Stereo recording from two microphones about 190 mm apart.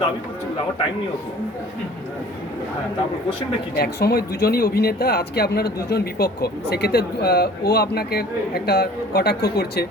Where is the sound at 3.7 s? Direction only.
55° left (ahead or behind).